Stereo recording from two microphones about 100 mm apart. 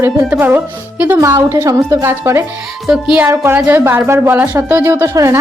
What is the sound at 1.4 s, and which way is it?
A woman's voice, 30° right (ahead or behind).